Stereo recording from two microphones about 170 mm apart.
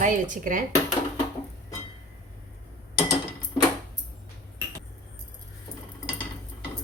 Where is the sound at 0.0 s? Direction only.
50° right (ahead or behind).